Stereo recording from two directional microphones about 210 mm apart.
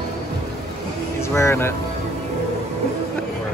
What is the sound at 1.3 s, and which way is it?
Speech, 10° left (ahead or behind).